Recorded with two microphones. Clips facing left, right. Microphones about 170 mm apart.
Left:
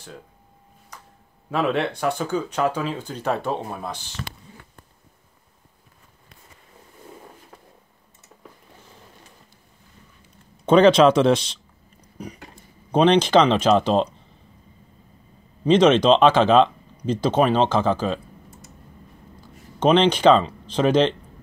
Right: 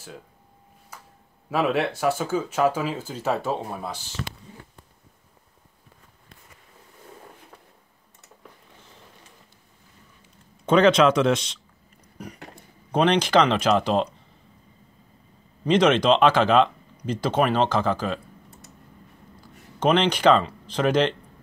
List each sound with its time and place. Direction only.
0.9 s a sound: 5° right (ahead or behind)
1.5 s speech: 5° right (ahead or behind)
10.6 s speech: 30° left (ahead or behind)
12.9 s speech: 25° left (ahead or behind)
15.6 s speech: 25° left (ahead or behind)
19.8 s speech: 20° left (ahead or behind)